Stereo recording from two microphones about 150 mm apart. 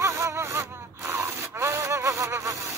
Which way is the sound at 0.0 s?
20° right (ahead or behind).